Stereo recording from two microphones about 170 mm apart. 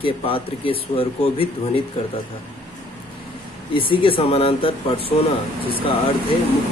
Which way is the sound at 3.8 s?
30° left (ahead or behind).